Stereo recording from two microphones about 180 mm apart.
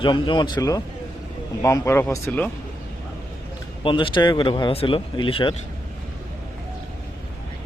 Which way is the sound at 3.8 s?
30° left (ahead or behind).